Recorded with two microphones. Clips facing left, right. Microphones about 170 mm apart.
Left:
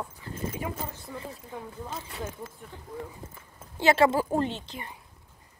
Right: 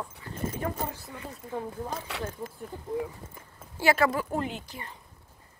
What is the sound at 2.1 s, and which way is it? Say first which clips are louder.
Speech: right 2 dB; 75° right (ahead or behind).